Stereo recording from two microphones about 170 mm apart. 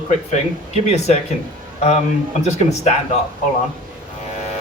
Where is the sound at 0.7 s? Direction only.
40° left (ahead or behind).